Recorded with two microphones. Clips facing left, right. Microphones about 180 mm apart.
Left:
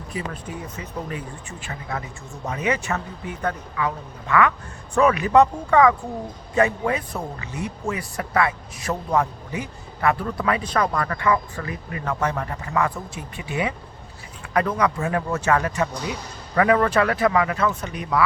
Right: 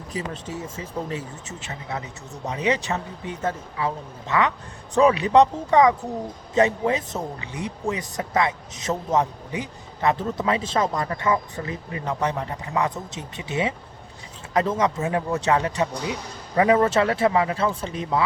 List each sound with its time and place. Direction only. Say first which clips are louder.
0.1 s speech: even; 35° right (ahead or behind)
0.8 s speech: right 2 dB; 25° right (ahead or behind)